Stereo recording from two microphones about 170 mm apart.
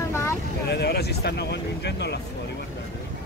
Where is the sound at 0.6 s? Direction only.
70° left (ahead or behind).